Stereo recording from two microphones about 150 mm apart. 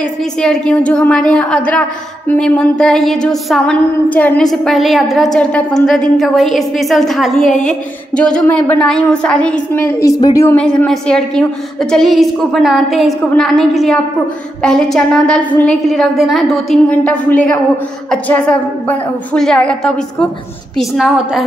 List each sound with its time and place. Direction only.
0.0 s a woman's voice: 5° left (ahead or behind)
7.4 s a woman's voice: 55° left (ahead or behind)
8.1 s a woman's voice: 5° left (ahead or behind); by 10.5 s 20° left (ahead or behind)
10.5 s a woman's voice: 10° left (ahead or behind)
18.9 s a woman's voice: 5° left (ahead or behind)